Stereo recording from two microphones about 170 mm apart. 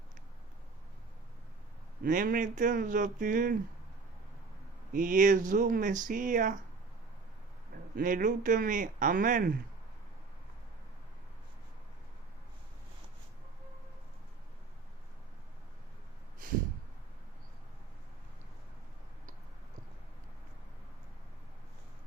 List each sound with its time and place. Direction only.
2.0 s speech: 50° right (ahead or behind)
4.9 s speech: 50° right (ahead or behind)
7.9 s speech: 55° right (ahead or behind)